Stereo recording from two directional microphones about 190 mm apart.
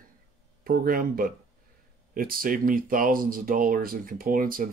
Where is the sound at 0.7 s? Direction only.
50° right (ahead or behind).